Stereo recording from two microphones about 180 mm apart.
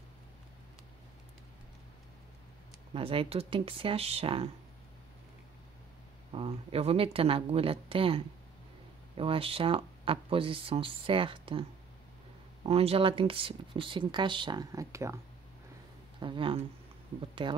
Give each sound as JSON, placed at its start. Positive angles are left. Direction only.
{"t": 2.9, "sound": "speech", "side_deg": -30}
{"t": 6.3, "sound": "speech", "side_deg": -30}
{"t": 12.6, "sound": "speech", "side_deg": -35}
{"t": 16.2, "sound": "speech", "side_deg": -30}